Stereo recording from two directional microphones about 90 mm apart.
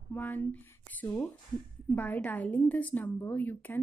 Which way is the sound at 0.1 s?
20° left (ahead or behind).